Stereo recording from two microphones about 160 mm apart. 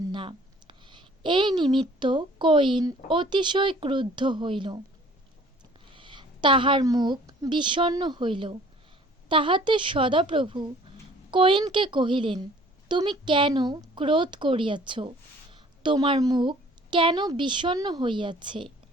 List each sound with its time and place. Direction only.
0.1 s speech: 30° right (ahead or behind)
5.9 s a woman's voice: 30° right (ahead or behind)